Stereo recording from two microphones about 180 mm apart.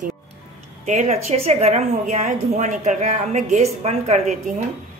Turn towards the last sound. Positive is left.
turn(degrees=-40)  # may be behind; listen again after turning